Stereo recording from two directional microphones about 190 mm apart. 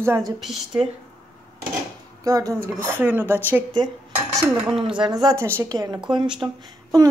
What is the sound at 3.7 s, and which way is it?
Cutlery, 20° right (ahead or behind).